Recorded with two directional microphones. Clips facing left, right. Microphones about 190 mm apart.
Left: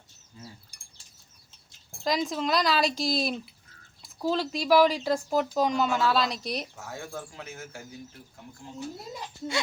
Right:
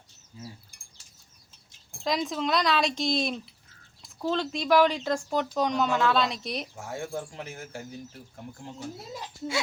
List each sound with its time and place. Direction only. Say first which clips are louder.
2.0 s speech: even; centre (ahead or behind)
6.7 s speech: right 4 dB; 30° right (ahead or behind)
9.1 s speech: right 3 dB; centre (ahead or behind)